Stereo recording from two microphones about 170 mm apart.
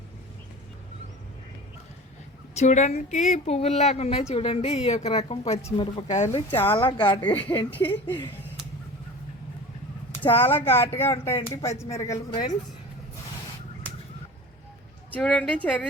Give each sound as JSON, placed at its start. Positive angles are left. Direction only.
{"t": 2.6, "sound": "speech", "side_deg": 45}
{"t": 6.5, "sound": "speech", "side_deg": 10}
{"t": 6.7, "sound": "a woman's voice", "side_deg": 30}
{"t": 8.0, "sound": "speech", "side_deg": 15}
{"t": 10.3, "sound": "speech", "side_deg": 15}
{"t": 15.1, "sound": "speech", "side_deg": 5}